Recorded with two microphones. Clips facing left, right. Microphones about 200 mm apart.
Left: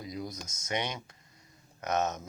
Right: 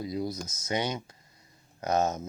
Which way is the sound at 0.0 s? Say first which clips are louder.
Right 7 dB; 30° right (ahead or behind).